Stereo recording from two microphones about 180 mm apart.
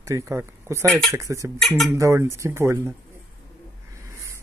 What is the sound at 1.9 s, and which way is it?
Speech, 15° right (ahead or behind).